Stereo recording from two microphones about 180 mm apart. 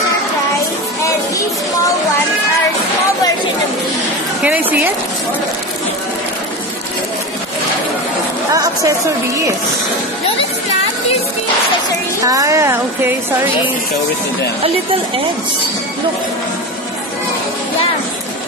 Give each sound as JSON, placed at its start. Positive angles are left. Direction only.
{"t": 4.4, "sound": "a woman's voice", "side_deg": -10}
{"t": 8.5, "sound": "a woman's voice", "side_deg": -20}
{"t": 12.3, "sound": "a woman's voice", "side_deg": -20}